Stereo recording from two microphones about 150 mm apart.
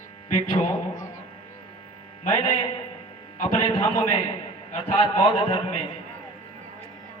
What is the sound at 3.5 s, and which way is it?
Speech, 35° left (ahead or behind).